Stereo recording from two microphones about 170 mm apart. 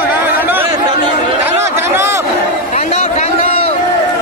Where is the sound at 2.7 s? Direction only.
40° left (ahead or behind).